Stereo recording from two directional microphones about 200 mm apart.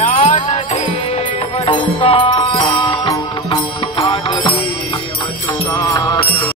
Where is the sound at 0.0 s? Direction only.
35° left (ahead or behind).